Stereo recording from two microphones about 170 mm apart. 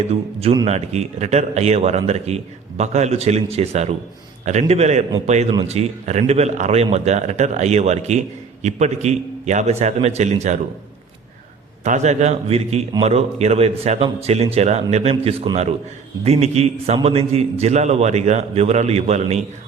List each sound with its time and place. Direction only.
0.1 s a man's voice: 35° right (ahead or behind)
11.8 s a man's voice: 45° right (ahead or behind)